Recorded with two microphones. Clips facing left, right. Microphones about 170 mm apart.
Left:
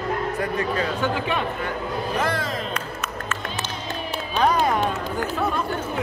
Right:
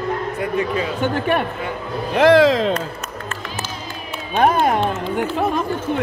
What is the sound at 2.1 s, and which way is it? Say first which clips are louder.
Speech: right 16 dB; 85° right.